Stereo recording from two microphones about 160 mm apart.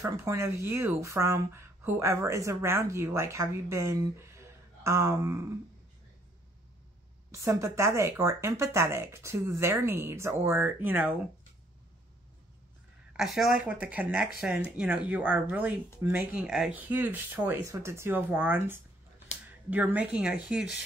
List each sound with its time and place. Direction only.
0.0 s speech: 15° right (ahead or behind)
7.2 s speech: 20° right (ahead or behind)
13.1 s speech: 5° right (ahead or behind)